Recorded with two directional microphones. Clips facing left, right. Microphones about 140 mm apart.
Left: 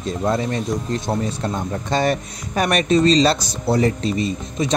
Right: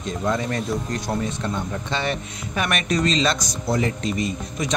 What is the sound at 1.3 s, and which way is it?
Speech, 35° left (ahead or behind).